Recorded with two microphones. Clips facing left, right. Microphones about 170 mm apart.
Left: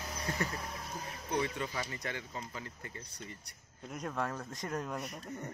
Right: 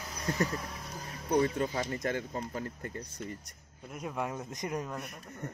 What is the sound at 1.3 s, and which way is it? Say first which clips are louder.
Speech: right 7 dB; 45° right (ahead or behind).